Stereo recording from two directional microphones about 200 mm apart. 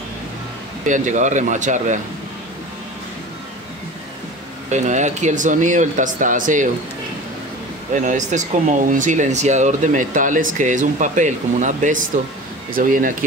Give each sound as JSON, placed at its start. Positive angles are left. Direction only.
{"t": 0.8, "sound": "speech", "side_deg": -40}
{"t": 4.6, "sound": "speech", "side_deg": -35}
{"t": 7.9, "sound": "speech", "side_deg": -40}